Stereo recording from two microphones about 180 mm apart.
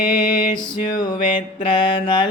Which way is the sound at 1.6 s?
30° left (ahead or behind).